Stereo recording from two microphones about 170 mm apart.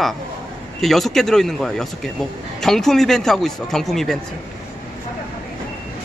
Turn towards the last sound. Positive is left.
turn(degrees=0)  # may be behind; listen again after turning